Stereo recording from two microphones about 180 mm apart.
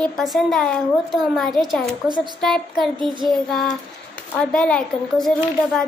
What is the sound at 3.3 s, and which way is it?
A child's voice, centre (ahead or behind).